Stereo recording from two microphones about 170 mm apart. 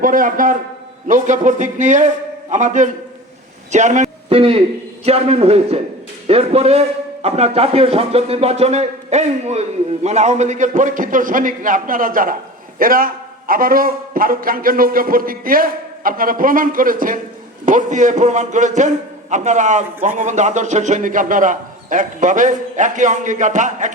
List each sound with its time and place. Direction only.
0.0 s a man's voice: 50° right (ahead or behind)